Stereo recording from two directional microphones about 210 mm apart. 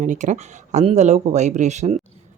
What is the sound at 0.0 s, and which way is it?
Speech, 35° right (ahead or behind).